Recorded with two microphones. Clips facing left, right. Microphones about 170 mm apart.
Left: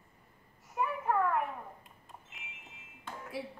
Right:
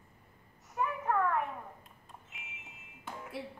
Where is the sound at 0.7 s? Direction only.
5° left (ahead or behind).